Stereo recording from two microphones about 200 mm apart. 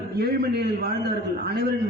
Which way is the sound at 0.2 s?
55° right (ahead or behind).